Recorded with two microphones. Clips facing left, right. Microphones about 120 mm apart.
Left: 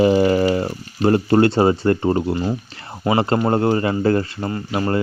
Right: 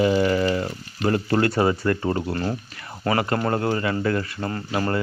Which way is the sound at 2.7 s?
30° left (ahead or behind).